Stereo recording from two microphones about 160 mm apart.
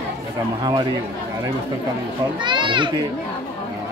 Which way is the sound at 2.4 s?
30° right (ahead or behind).